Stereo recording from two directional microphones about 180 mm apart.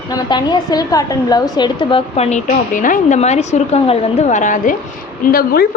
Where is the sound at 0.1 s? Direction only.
25° left (ahead or behind); by 4.7 s 45° left (ahead or behind).